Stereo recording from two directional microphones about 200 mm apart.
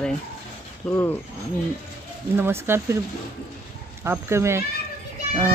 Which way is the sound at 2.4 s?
10° right (ahead or behind).